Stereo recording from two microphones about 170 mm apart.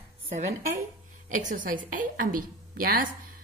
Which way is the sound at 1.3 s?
50° right (ahead or behind).